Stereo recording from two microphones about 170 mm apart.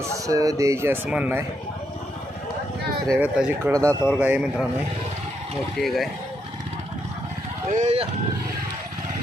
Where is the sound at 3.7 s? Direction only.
20° right (ahead or behind).